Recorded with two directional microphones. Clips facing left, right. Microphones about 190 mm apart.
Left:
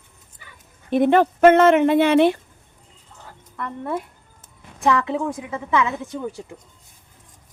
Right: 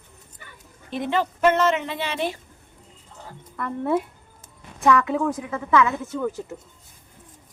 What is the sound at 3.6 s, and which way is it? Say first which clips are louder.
Speech: right 4 dB; 10° right (ahead or behind).